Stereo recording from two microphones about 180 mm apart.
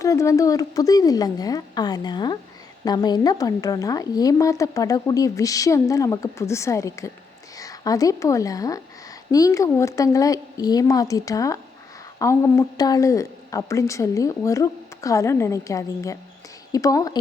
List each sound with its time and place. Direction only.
0.0 s a woman's voice: 15° left (ahead or behind)